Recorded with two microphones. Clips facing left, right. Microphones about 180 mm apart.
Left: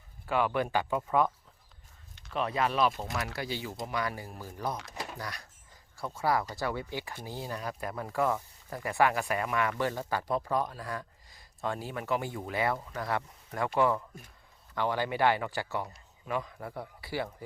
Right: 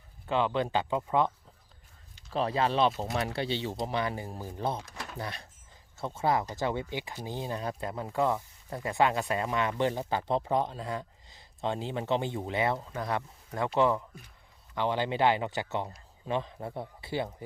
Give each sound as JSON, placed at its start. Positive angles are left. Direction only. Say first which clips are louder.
{"t": 0.3, "sound": "speech", "louder": "right 1 dB", "side_deg": -25}
{"t": 2.3, "sound": "speech", "louder": "right 2 dB", "side_deg": -30}
{"t": 4.9, "sound": "a sound", "louder": "left 2 dB", "side_deg": 20}
{"t": 5.2, "sound": "speech", "louder": "right 2 dB", "side_deg": -25}